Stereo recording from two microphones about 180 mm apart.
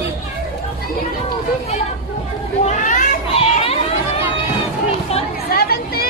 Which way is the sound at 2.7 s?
45° left (ahead or behind).